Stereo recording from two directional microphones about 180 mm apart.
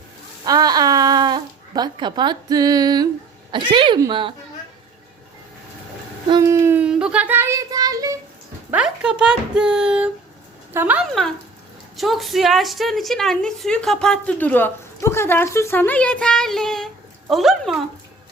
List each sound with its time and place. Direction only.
0.4 s a woman's voice: 20° right (ahead or behind)
6.3 s child singing: 15° right (ahead or behind)
8.7 s a woman's voice: 5° right (ahead or behind)